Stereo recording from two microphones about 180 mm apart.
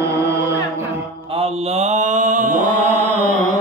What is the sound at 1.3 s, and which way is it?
Mantra, 35° right (ahead or behind).